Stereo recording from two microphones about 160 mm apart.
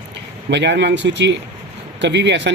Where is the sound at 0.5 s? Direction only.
90° right.